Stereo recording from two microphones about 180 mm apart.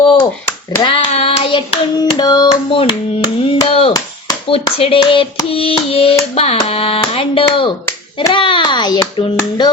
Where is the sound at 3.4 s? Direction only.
30° left (ahead or behind).